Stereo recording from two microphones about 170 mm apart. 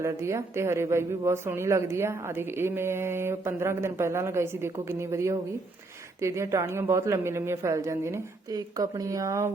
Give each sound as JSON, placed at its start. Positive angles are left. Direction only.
{"t": 0.0, "sound": "a woman's voice", "side_deg": -15}